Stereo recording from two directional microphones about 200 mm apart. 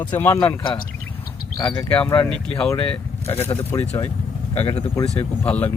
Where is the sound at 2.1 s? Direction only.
5° left (ahead or behind).